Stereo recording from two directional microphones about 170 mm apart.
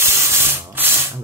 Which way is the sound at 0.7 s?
10° right (ahead or behind).